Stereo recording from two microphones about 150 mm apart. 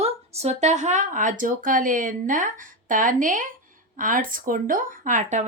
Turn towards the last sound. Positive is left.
turn(degrees=-55)  # may be behind; listen again after turning